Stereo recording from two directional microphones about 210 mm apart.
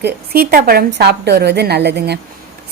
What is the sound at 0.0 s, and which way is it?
A woman's voice, 45° right (ahead or behind).